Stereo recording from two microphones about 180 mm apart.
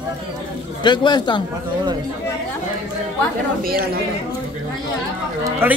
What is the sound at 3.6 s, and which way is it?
Speech, 55° right (ahead or behind).